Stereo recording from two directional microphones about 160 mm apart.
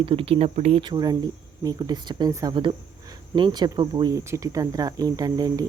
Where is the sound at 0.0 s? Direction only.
35° right (ahead or behind).